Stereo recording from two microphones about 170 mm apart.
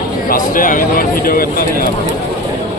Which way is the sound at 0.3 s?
55° left (ahead or behind).